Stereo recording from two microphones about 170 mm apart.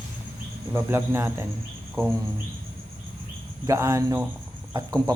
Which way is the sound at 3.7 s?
15° right (ahead or behind).